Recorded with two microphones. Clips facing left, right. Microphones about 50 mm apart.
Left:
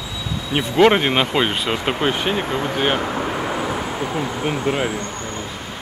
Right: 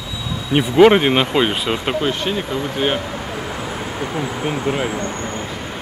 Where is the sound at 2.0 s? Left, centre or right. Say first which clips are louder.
Left 1 dB; centre.